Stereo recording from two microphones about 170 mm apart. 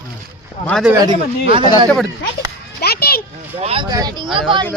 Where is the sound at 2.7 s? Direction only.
65° left (ahead or behind).